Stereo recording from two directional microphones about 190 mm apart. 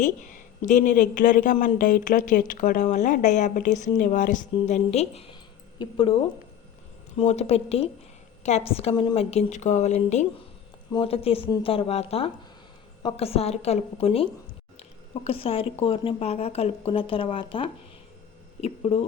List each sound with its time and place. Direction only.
0.0 s a woman's voice: 40° left (ahead or behind)
7.2 s a woman's voice: 35° left (ahead or behind)
14.8 s a sound: 35° left (ahead or behind)
15.8 s a woman's voice: 30° left (ahead or behind)